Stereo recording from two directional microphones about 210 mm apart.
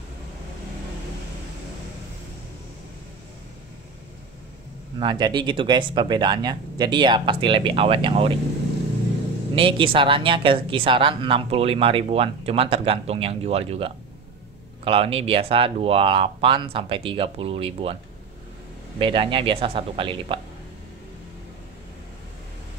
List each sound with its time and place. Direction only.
5.0 s speech: 20° right (ahead or behind)
9.6 s speech: 25° right (ahead or behind)
18.9 s speech: 25° right (ahead or behind)